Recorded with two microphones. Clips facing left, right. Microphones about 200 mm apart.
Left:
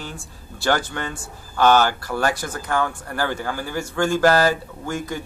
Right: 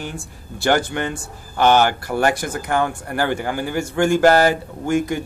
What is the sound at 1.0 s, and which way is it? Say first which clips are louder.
Speech: right 5 dB; 20° right (ahead or behind).